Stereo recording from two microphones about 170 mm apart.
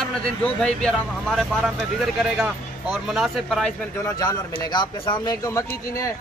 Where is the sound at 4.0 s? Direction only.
20° left (ahead or behind).